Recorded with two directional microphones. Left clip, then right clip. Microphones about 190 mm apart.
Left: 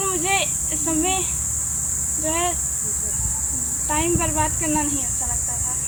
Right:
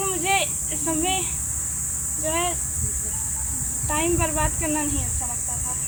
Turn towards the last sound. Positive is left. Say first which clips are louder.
# left 3 dB
turn(degrees=-15)  # may be behind; listen again after turning